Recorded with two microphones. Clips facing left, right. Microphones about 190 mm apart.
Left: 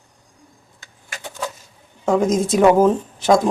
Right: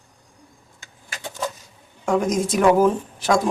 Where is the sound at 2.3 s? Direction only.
25° left (ahead or behind).